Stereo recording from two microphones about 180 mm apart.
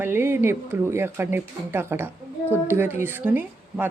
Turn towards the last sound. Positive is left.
turn(degrees=-10)  # may be behind; listen again after turning